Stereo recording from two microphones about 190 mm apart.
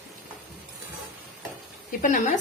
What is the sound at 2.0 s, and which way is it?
Speech, 40° left (ahead or behind).